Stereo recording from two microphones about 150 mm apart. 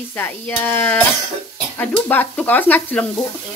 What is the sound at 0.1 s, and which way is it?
Sizzle, 15° left (ahead or behind).